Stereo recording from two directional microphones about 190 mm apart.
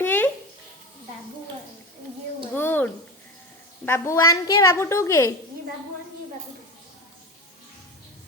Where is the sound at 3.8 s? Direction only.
15° left (ahead or behind).